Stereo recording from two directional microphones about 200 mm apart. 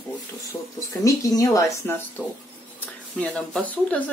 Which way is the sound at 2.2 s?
5° right (ahead or behind).